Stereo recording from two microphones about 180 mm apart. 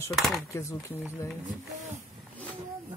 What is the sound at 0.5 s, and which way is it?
Speech, 15° left (ahead or behind).